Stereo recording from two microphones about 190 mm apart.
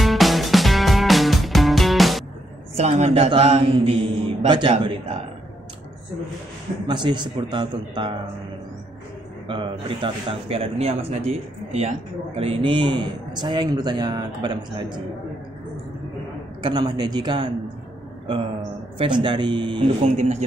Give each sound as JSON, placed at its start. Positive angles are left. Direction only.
{"t": 0.0, "sound": "music", "side_deg": 0}
{"t": 2.7, "sound": "a man's voice", "side_deg": -35}
{"t": 6.9, "sound": "a man's voice", "side_deg": -25}
{"t": 9.5, "sound": "a man's voice", "side_deg": -25}
{"t": 16.6, "sound": "a man's voice", "side_deg": -20}